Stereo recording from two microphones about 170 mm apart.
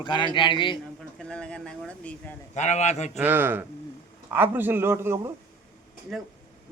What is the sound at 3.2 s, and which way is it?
Speech, 10° right (ahead or behind).